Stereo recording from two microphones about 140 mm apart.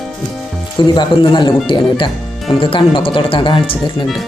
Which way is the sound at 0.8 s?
35° left (ahead or behind).